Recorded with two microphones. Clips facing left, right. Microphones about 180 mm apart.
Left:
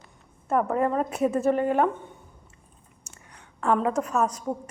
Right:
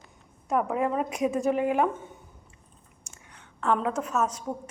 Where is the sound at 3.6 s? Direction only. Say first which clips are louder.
Left 3 dB; centre (ahead or behind).